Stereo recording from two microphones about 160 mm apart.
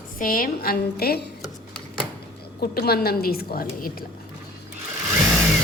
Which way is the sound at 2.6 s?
75° left (ahead or behind).